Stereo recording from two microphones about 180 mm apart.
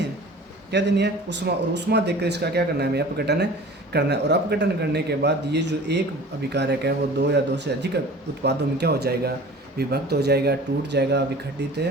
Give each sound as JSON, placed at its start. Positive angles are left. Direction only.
{"t": 0.7, "sound": "speech", "side_deg": -75}